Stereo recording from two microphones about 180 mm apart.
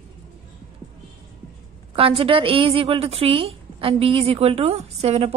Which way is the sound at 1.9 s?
30° right (ahead or behind).